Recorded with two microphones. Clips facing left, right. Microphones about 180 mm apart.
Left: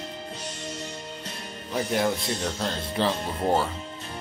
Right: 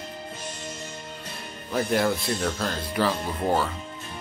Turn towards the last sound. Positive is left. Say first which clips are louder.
# even
turn(degrees=25)  # may be behind; listen again after turning